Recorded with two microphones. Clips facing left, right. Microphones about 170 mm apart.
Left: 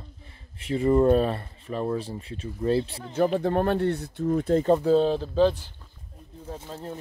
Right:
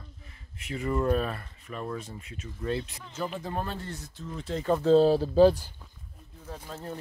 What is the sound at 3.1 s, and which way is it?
Speech, 60° left (ahead or behind).